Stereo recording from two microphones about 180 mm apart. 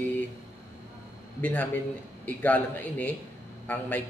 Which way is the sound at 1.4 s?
10° left (ahead or behind).